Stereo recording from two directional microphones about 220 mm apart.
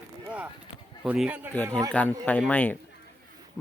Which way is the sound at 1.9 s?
5° left (ahead or behind).